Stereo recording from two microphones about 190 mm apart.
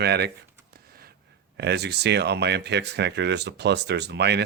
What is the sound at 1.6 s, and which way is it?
Speech, 60° right (ahead or behind).